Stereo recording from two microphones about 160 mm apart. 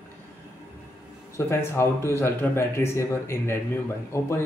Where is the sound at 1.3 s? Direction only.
15° left (ahead or behind).